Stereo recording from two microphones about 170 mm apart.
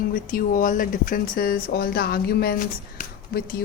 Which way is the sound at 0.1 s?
55° left (ahead or behind).